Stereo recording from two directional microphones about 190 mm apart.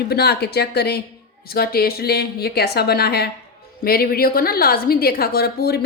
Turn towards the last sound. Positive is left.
turn(degrees=55)  # may be behind; listen again after turning